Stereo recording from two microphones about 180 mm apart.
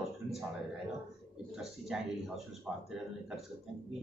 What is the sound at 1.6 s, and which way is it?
Speech, centre (ahead or behind).